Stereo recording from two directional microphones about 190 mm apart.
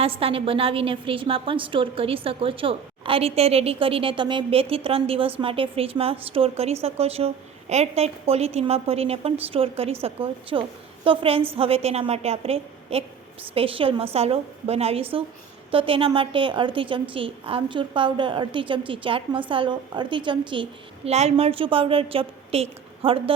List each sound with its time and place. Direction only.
0.0 s a woman's voice: 30° right (ahead or behind)